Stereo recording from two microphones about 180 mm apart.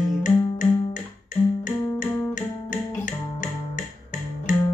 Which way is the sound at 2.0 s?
15° left (ahead or behind).